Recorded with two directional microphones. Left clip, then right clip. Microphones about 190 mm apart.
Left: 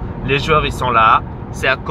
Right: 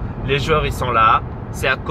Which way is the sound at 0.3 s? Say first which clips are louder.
Left 3 dB; 20° left (ahead or behind).